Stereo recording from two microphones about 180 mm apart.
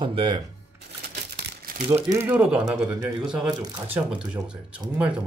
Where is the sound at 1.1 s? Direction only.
55° right (ahead or behind).